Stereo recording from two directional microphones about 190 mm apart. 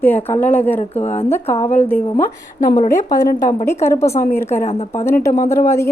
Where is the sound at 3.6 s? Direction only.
15° left (ahead or behind).